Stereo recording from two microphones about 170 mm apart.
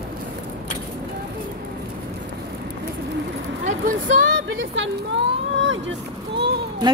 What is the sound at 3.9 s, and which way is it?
Vehicle, 50° right (ahead or behind).